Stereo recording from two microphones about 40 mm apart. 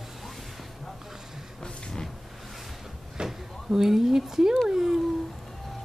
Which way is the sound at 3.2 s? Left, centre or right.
Centre.